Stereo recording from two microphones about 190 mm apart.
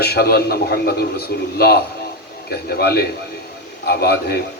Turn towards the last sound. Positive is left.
turn(degrees=55)  # may be behind; listen again after turning